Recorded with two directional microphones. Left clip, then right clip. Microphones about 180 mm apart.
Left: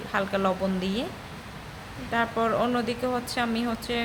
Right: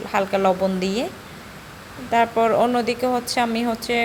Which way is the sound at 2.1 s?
25° right (ahead or behind).